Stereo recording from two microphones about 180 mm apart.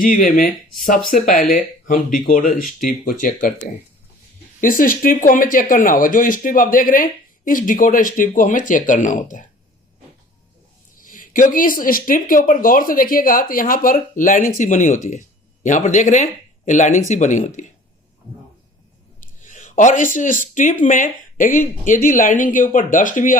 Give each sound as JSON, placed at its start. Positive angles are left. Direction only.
{"t": 0.0, "sound": "speech", "side_deg": 50}
{"t": 11.0, "sound": "speech", "side_deg": 50}
{"t": 19.5, "sound": "a sound", "side_deg": 45}
{"t": 20.1, "sound": "speech", "side_deg": 45}